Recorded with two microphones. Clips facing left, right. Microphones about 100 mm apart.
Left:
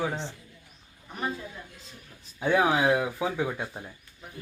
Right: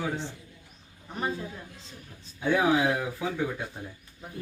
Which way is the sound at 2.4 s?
25° left (ahead or behind).